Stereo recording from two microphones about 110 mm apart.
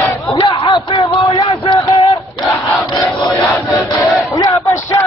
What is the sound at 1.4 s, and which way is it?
Music, 50° left (ahead or behind).